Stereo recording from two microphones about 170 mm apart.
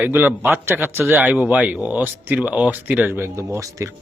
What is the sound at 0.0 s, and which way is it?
Speech, 10° right (ahead or behind).